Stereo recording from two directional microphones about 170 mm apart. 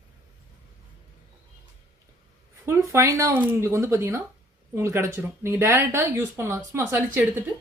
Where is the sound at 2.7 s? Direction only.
15° right (ahead or behind).